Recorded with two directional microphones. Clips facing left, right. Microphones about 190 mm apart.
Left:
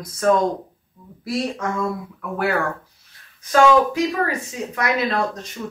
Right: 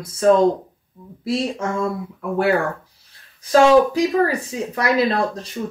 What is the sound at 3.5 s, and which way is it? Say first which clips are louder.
Speech: right 3 dB; 35° right (ahead or behind).